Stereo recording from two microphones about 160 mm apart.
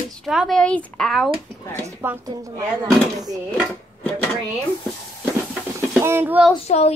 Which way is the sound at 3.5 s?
10° left (ahead or behind).